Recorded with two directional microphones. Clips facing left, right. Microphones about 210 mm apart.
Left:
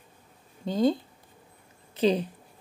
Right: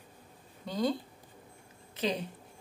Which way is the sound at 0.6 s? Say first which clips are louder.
Left 7 dB; 25° left (ahead or behind).